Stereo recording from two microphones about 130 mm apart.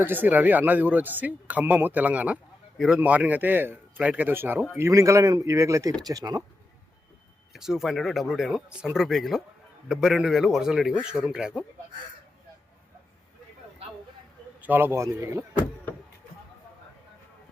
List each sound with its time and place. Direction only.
0.0 s speech: 15° right (ahead or behind)
7.5 s speech: 5° right (ahead or behind)
14.6 s speech: 15° right (ahead or behind)